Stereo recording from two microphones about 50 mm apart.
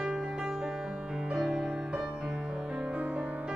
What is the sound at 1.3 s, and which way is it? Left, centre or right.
Music, centre.